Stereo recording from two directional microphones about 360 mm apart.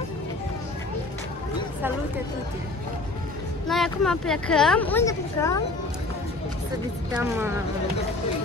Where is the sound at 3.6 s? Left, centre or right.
Centre.